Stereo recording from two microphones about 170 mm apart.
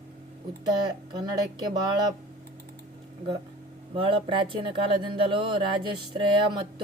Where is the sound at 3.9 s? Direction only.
30° right (ahead or behind).